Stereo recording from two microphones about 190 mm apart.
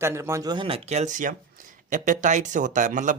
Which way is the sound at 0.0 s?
15° right (ahead or behind).